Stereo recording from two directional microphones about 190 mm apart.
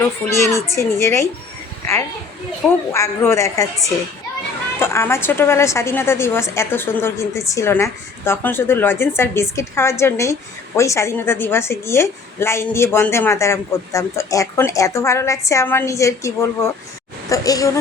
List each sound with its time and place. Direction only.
0.0 s a woman's voice: 15° left (ahead or behind)
2.9 s a woman's voice: 15° left (ahead or behind)
4.8 s a woman's voice: 15° left (ahead or behind)